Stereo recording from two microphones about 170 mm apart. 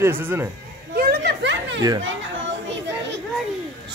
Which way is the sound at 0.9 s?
65° right (ahead or behind).